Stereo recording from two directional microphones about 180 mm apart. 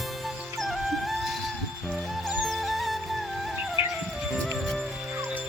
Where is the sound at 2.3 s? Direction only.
Centre (ahead or behind).